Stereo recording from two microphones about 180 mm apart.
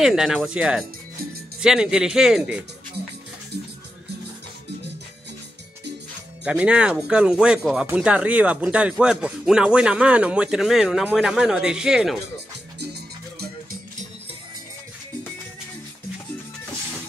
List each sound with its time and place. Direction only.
0.0 s speech: 5° right (ahead or behind)
6.4 s speech: 5° right (ahead or behind)
13.4 s music: 55° right (ahead or behind)